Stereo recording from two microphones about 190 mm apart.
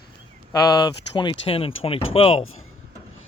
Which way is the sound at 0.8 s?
20° left (ahead or behind).